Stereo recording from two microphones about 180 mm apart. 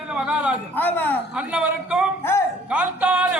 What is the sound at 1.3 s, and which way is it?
Speech, 5° right (ahead or behind).